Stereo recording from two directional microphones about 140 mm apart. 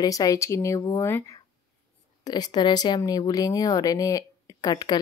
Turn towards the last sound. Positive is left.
turn(degrees=30)  # may be behind; listen again after turning